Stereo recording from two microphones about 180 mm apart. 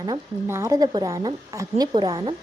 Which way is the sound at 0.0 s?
15° right (ahead or behind).